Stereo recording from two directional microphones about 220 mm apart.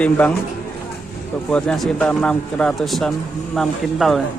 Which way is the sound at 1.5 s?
5° left (ahead or behind).